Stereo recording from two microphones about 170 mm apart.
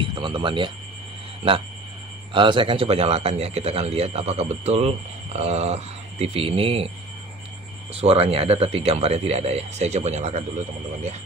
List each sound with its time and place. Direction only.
0.0 s speech: 30° right (ahead or behind)
8.0 s speech: 35° right (ahead or behind)